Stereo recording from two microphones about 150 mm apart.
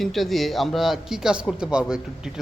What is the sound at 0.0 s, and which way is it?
Speech, centre (ahead or behind).